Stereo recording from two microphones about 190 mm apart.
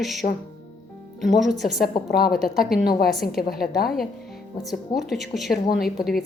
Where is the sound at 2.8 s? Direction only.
50° left (ahead or behind).